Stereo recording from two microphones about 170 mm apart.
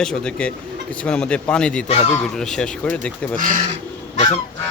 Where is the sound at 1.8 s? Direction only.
35° left (ahead or behind).